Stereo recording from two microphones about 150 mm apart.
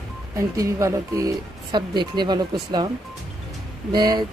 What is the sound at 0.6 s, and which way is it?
Speech, 20° right (ahead or behind).